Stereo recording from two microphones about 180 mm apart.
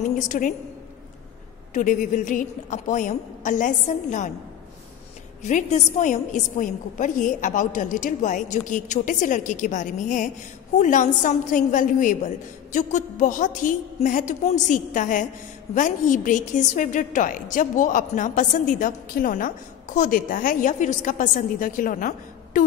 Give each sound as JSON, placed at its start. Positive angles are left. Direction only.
{"t": 0.0, "sound": "a woman's voice", "side_deg": 45}
{"t": 1.7, "sound": "a woman's voice", "side_deg": 45}
{"t": 5.4, "sound": "a woman's voice", "side_deg": 40}